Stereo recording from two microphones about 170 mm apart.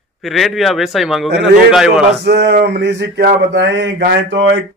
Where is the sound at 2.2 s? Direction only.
75° right (ahead or behind); by 4.6 s 90° right.